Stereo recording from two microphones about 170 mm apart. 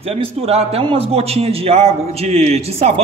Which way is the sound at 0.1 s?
35° right (ahead or behind).